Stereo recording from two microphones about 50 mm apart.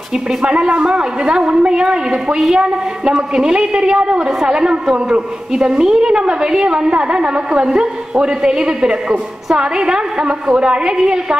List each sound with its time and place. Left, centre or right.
0.4 s a woman's voice: centre